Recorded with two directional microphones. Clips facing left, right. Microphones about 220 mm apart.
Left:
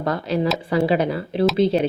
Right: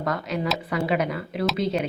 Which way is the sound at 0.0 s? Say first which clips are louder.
Left 5 dB; 30° left (ahead or behind).